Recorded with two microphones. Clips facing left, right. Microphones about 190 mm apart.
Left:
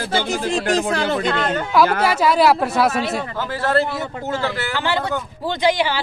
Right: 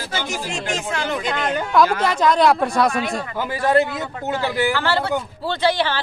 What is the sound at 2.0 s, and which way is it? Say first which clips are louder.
Speech: left 1 dB; 5° left (ahead or behind).